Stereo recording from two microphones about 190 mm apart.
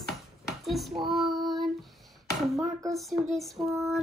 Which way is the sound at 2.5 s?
15° right (ahead or behind).